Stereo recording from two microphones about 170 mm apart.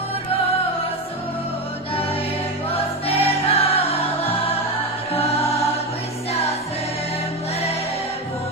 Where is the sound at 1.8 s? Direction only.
35° left (ahead or behind).